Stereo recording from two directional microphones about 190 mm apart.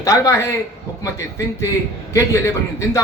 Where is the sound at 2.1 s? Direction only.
15° left (ahead or behind).